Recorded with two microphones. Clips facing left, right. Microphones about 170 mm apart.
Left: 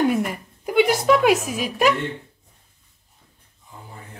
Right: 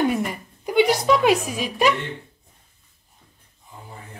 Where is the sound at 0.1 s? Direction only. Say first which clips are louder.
Left 2 dB; 5° left (ahead or behind).